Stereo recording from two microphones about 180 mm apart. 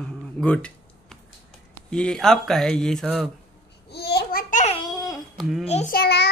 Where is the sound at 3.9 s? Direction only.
65° left (ahead or behind); by 4.7 s 45° left (ahead or behind).